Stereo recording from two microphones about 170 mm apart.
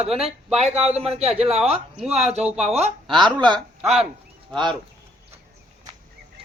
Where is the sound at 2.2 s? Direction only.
40° right (ahead or behind).